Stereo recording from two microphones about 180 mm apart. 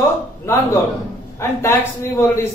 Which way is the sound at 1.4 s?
15° left (ahead or behind).